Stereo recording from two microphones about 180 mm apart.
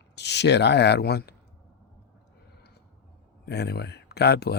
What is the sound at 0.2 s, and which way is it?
Speech, 70° left (ahead or behind).